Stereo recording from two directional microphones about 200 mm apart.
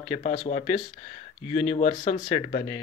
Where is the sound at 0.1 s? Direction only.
35° left (ahead or behind).